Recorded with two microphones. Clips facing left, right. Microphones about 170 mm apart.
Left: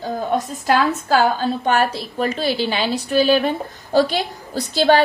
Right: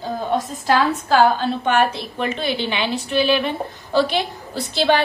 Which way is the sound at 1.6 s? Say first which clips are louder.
Even; 40° left (ahead or behind).